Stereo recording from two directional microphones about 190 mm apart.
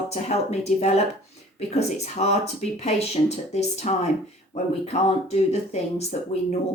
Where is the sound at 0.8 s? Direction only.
35° left (ahead or behind).